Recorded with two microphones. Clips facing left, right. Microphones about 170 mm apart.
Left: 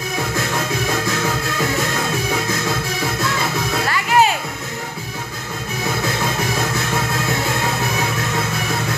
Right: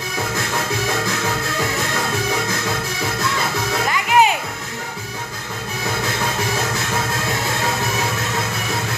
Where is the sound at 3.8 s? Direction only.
15° right (ahead or behind).